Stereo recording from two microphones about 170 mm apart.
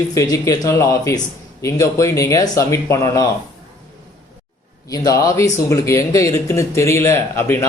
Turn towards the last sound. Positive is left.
turn(degrees=15)  # may be behind; listen again after turning